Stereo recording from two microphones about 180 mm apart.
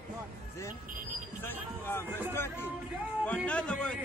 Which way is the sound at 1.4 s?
10° left (ahead or behind).